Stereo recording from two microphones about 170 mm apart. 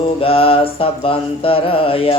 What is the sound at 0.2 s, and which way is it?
Mantra, 35° left (ahead or behind).